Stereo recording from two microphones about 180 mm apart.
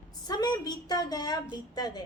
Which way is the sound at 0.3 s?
20° left (ahead or behind).